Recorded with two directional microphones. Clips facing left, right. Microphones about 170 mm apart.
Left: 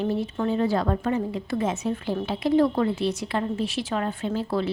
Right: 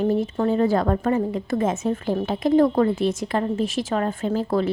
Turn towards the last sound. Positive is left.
turn(degrees=-45)  # may be behind; listen again after turning